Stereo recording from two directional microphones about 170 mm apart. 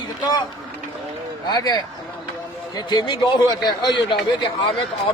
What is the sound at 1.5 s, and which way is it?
A man's voice, 25° left (ahead or behind).